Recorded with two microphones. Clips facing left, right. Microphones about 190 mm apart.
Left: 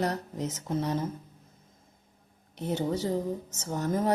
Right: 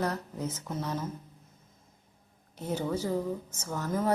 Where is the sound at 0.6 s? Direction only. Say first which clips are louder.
Left 5 dB; 30° left (ahead or behind).